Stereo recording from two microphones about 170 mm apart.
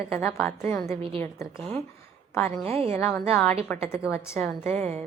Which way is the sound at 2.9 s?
15° left (ahead or behind).